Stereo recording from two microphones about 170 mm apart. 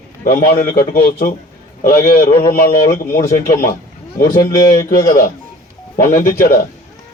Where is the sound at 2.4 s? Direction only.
65° left (ahead or behind).